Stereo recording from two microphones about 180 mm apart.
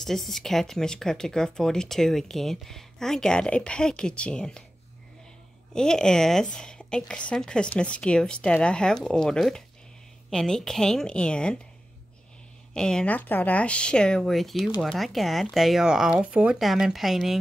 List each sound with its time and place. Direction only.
0.0 s speech: centre (ahead or behind)
5.7 s speech: 5° left (ahead or behind)
12.7 s speech: 5° left (ahead or behind)